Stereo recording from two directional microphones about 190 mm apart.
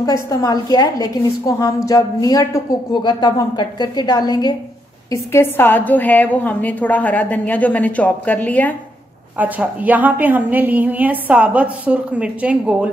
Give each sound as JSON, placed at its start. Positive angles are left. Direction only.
{"t": 0.3, "sound": "a woman's voice", "side_deg": 20}
{"t": 9.4, "sound": "a woman's voice", "side_deg": -10}